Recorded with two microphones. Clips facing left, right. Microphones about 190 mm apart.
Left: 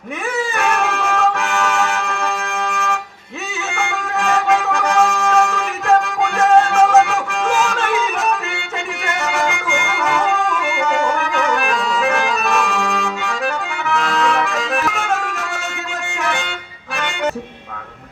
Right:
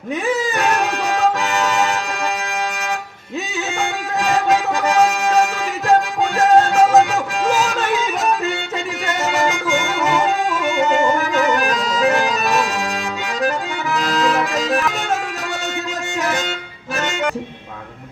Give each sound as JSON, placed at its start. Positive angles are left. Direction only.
{"t": 0.6, "sound": "a sound", "side_deg": -35}
{"t": 1.6, "sound": "music", "side_deg": -35}
{"t": 3.8, "sound": "music", "side_deg": -35}
{"t": 6.6, "sound": "music", "side_deg": -35}
{"t": 9.0, "sound": "music", "side_deg": -35}
{"t": 11.2, "sound": "clarinet", "side_deg": -35}
{"t": 13.9, "sound": "accordion", "side_deg": -35}